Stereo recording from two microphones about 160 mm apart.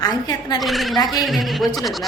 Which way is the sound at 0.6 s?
Centre (ahead or behind).